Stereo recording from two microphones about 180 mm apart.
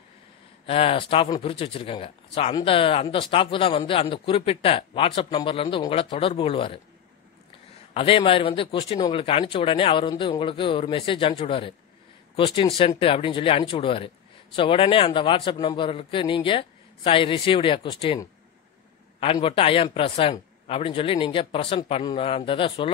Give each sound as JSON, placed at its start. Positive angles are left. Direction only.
{"t": 0.7, "sound": "speech", "side_deg": 30}
{"t": 7.9, "sound": "a man's voice", "side_deg": 30}